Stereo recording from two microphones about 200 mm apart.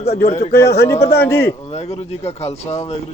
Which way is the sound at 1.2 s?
10° left (ahead or behind).